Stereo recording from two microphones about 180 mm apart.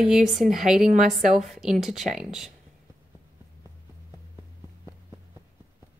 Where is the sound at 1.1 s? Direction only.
Centre (ahead or behind).